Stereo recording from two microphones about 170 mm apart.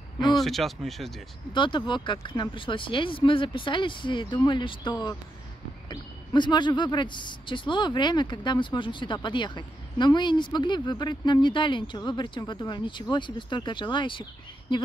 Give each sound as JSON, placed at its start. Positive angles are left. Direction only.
{"t": 0.4, "sound": "speech", "side_deg": 0}
{"t": 1.5, "sound": "speech", "side_deg": 30}